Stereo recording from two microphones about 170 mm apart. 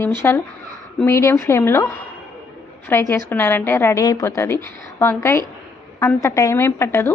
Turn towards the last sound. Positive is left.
turn(degrees=15)  # may be behind; listen again after turning